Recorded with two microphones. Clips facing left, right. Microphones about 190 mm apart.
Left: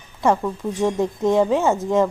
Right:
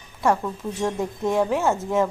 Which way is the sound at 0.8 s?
20° left (ahead or behind).